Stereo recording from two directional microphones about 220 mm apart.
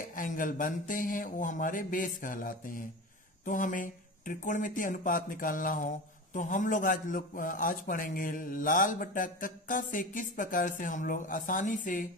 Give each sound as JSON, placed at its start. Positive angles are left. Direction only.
{"t": 0.0, "sound": "a man's voice", "side_deg": 40}